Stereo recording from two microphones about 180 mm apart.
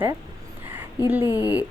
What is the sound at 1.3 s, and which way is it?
Speech, 20° left (ahead or behind).